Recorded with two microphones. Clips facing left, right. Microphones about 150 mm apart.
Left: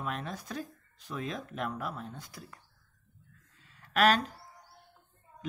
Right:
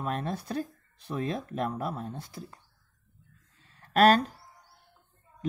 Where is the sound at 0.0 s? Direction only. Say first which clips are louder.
Right 5 dB; 30° right (ahead or behind).